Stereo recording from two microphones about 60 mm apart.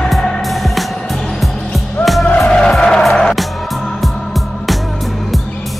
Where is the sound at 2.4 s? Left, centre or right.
Centre.